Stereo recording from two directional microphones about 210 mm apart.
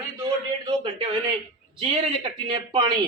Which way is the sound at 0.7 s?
20° right (ahead or behind).